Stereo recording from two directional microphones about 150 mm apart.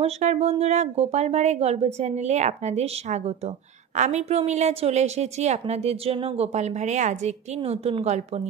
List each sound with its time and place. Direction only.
0.0 s a woman's voice: 50° right (ahead or behind)